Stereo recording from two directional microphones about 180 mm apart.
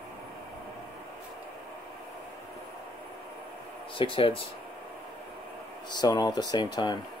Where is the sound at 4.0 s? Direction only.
30° left (ahead or behind).